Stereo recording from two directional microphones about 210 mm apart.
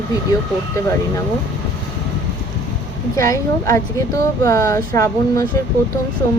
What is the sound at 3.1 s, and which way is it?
Speech, 15° left (ahead or behind).